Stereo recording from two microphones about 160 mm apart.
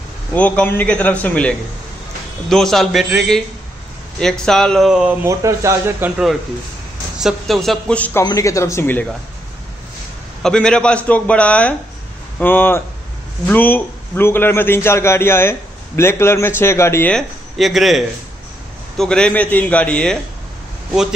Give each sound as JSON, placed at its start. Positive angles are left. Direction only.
{"t": 0.3, "sound": "a man's voice", "side_deg": 10}
{"t": 2.5, "sound": "speech", "side_deg": 0}
{"t": 5.2, "sound": "speech", "side_deg": -20}
{"t": 10.4, "sound": "a man's voice", "side_deg": 5}
{"t": 17.1, "sound": "a man's voice", "side_deg": 0}